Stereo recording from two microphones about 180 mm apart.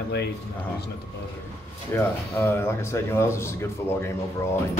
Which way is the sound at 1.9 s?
15° left (ahead or behind).